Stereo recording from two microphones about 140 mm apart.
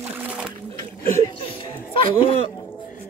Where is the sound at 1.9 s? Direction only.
40° left (ahead or behind).